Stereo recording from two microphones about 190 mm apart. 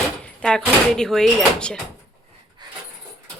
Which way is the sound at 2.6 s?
20° right (ahead or behind).